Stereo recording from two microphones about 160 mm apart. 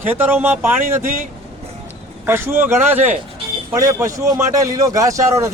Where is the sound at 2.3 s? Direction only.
15° right (ahead or behind).